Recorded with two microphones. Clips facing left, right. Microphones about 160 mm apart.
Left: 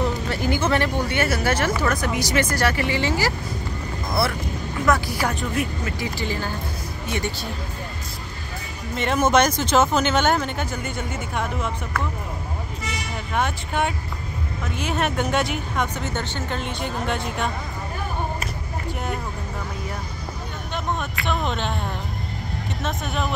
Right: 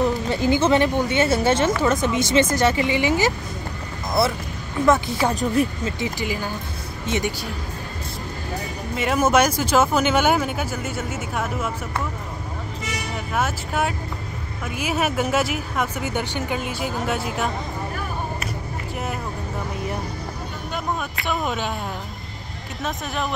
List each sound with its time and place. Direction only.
0.0 s speech: 20° right (ahead or behind)
4.8 s speech: 25° right (ahead or behind)
5.3 s speech: 35° right (ahead or behind)
5.9 s speech: 20° right (ahead or behind)
6.2 s speech: 10° right (ahead or behind)
8.9 s speech: 5° right (ahead or behind)
13.3 s speech: 5° right (ahead or behind)
21.3 s speech: 5° right (ahead or behind)
22.8 s speech: centre (ahead or behind)